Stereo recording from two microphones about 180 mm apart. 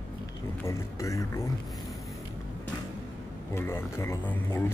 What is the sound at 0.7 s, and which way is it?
Speech, 15° left (ahead or behind).